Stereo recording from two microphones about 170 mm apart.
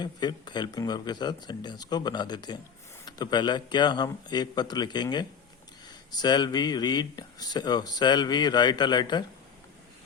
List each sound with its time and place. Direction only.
0.0 s speech: 25° left (ahead or behind)